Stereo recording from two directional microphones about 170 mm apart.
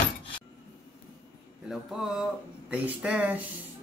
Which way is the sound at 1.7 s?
5° right (ahead or behind).